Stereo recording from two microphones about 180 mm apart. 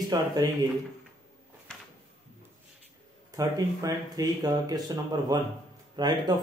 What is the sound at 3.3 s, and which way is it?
Speech, 20° right (ahead or behind).